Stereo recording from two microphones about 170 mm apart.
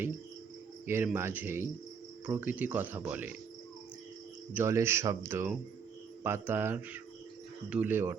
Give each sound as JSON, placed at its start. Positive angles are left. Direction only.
{"t": 0.9, "sound": "speech", "side_deg": -15}
{"t": 4.5, "sound": "speech", "side_deg": -15}